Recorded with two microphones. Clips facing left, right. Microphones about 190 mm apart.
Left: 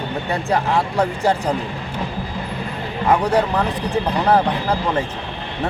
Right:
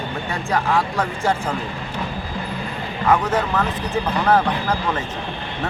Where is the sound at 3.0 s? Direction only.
15° left (ahead or behind).